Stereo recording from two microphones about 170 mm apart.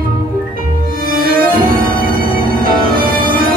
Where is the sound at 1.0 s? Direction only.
60° right (ahead or behind).